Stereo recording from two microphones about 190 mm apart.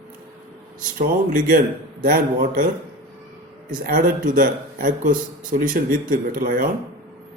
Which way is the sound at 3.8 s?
45° right (ahead or behind).